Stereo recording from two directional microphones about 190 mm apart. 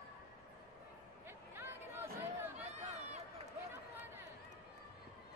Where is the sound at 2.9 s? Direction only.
35° right (ahead or behind).